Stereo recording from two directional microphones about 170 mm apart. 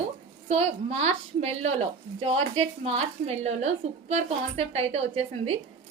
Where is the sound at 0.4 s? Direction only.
40° right (ahead or behind).